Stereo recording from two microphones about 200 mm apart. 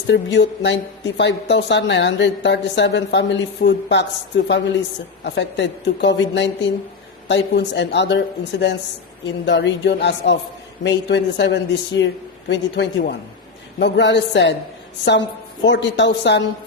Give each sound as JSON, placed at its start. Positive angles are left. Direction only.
{"t": 0.1, "sound": "speech", "side_deg": 60}
{"t": 15.6, "sound": "speech", "side_deg": 60}